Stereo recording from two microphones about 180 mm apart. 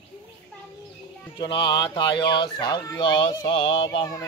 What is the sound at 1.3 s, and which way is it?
Speech, 25° left (ahead or behind).